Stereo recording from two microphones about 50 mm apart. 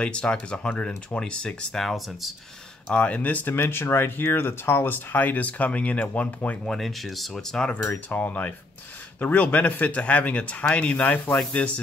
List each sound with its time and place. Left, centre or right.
0.0 s speech: centre
1.8 s speech: centre
2.9 s speech: left
3.7 s speech: left
6.6 s speech: centre
8.1 s speech: left